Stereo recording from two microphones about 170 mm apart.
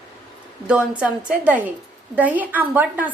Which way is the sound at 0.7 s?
5° right (ahead or behind).